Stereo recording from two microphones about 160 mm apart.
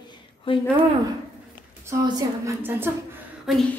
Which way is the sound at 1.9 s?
20° right (ahead or behind).